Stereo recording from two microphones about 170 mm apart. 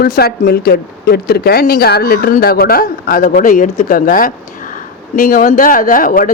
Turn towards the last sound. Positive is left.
turn(degrees=55)  # may be behind; listen again after turning